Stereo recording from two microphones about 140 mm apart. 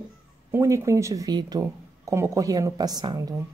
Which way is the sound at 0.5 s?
20° right (ahead or behind).